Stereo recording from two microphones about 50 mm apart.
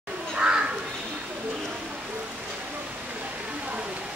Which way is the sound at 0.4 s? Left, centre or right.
Centre.